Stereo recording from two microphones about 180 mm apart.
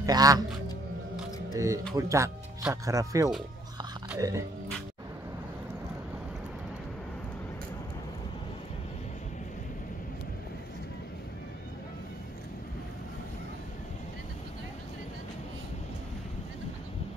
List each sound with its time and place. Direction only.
0.0 s speech: 20° right (ahead or behind)
1.5 s speech: 15° right (ahead or behind)
4.2 s music: 20° right (ahead or behind)